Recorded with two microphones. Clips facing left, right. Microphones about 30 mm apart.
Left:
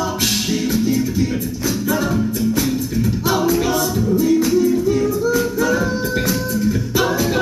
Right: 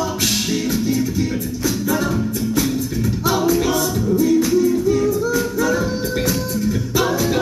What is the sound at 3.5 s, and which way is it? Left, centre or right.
A capella, centre.